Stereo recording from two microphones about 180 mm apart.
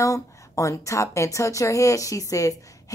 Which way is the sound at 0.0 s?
15° left (ahead or behind).